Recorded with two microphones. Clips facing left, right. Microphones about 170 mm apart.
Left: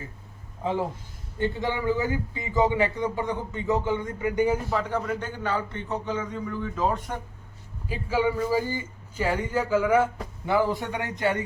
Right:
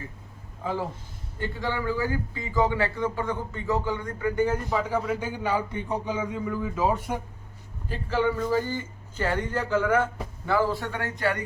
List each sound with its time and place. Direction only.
1.4 s speech: 20° left (ahead or behind); by 7.2 s 5° right (ahead or behind)
7.9 s a man's voice: 10° left (ahead or behind)